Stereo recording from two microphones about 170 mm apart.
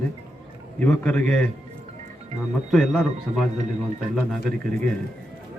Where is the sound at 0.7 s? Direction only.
10° left (ahead or behind).